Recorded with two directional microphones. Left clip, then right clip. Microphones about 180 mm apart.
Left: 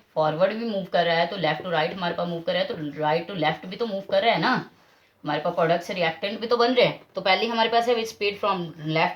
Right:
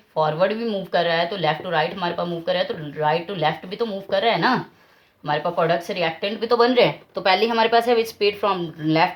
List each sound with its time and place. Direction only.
0.2 s speech: 45° right (ahead or behind)